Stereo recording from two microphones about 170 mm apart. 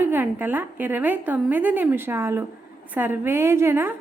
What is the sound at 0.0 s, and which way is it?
A woman's voice, 10° right (ahead or behind).